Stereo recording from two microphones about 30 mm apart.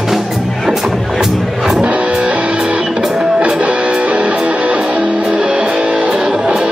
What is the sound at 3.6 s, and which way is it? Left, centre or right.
Music, right.